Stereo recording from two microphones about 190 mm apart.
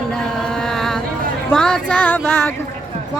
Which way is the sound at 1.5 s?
5° left (ahead or behind).